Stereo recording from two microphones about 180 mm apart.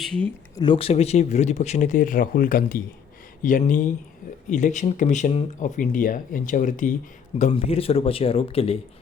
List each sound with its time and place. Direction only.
0.0 s speech: 5° left (ahead or behind)
0.5 s speech: 25° left (ahead or behind)